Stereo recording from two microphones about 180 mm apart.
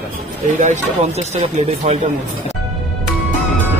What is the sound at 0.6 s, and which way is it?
Speech, 40° right (ahead or behind).